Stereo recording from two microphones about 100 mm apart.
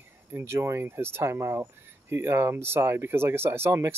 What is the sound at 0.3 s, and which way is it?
Speech, 25° right (ahead or behind).